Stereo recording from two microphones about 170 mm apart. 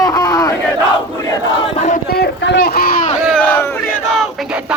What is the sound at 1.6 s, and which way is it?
Music, 45° left (ahead or behind).